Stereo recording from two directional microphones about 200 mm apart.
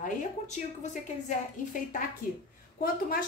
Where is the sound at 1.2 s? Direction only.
40° left (ahead or behind).